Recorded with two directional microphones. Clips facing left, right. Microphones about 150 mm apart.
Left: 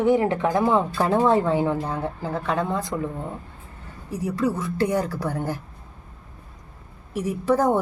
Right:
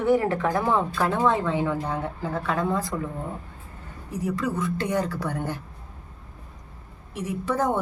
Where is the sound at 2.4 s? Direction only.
20° left (ahead or behind).